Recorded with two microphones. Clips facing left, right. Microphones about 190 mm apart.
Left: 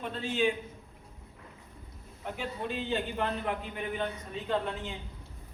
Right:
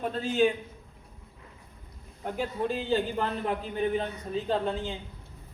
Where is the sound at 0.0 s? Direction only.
40° right (ahead or behind).